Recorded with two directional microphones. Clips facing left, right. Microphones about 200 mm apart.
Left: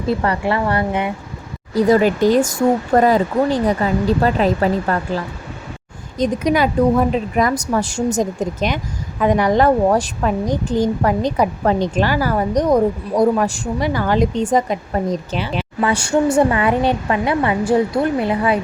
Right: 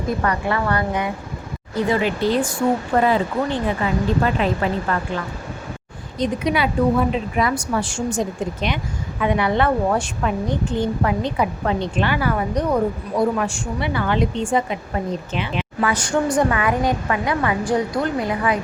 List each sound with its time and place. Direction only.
0.1 s a woman's voice: 30° left (ahead or behind)
1.7 s a woman's voice: 40° left (ahead or behind)
15.8 s a woman's voice: 25° left (ahead or behind)